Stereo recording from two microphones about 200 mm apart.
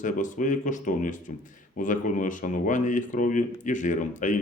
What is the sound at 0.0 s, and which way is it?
Speech, 40° left (ahead or behind).